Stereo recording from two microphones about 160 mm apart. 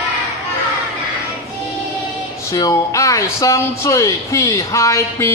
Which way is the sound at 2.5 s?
20° left (ahead or behind).